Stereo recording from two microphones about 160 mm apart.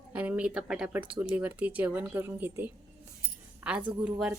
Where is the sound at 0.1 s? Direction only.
10° right (ahead or behind).